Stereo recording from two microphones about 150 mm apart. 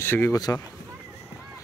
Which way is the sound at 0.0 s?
15° left (ahead or behind).